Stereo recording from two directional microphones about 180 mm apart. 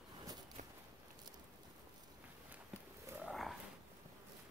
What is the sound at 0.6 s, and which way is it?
Walk, 45° right (ahead or behind).